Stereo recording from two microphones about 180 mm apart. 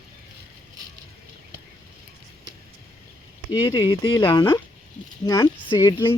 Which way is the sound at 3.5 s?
20° left (ahead or behind).